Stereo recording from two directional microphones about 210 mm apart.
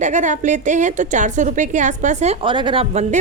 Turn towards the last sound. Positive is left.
turn(degrees=-30)  # may be behind; listen again after turning